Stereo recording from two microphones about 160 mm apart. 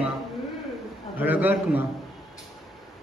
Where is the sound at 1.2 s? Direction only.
10° right (ahead or behind).